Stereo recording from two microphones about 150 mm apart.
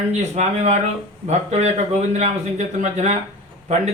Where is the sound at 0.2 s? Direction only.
50° right (ahead or behind).